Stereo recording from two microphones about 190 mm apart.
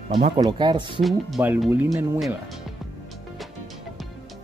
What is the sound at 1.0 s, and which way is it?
Speech, 5° right (ahead or behind).